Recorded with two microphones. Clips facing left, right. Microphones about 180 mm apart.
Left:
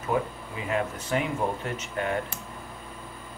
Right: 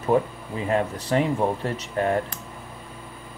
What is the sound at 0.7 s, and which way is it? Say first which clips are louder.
Speech: right 4 dB; 35° right (ahead or behind).